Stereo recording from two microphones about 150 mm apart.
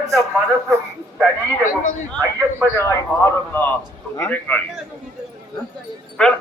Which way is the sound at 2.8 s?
15° left (ahead or behind).